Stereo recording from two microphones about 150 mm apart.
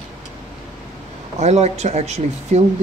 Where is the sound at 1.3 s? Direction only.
45° right (ahead or behind).